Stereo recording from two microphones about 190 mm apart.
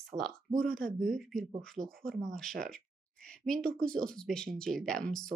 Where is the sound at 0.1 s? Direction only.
30° right (ahead or behind).